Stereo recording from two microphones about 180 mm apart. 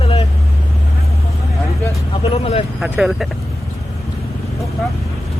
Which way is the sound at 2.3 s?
30° left (ahead or behind).